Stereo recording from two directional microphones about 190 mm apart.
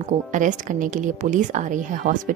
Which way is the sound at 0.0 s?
40° right (ahead or behind).